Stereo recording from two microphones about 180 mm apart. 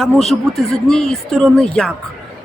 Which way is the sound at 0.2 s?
Centre (ahead or behind).